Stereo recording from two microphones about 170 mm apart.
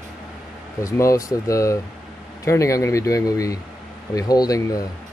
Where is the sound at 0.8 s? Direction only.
20° left (ahead or behind).